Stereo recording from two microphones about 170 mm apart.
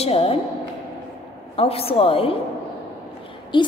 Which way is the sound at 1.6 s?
35° left (ahead or behind).